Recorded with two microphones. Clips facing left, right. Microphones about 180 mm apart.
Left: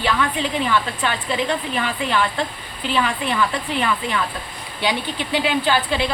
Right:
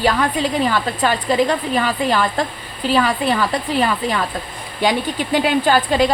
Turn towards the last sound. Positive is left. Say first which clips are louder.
# right 5 dB
turn(degrees=-40)  # may be behind; listen again after turning